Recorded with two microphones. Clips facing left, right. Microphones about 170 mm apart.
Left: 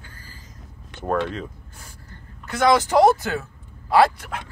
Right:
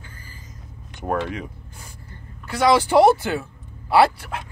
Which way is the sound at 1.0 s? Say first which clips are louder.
Left 1 dB; 15° right (ahead or behind).